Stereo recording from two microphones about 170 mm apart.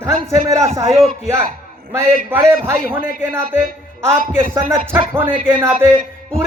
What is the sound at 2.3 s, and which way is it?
Speech, 15° right (ahead or behind).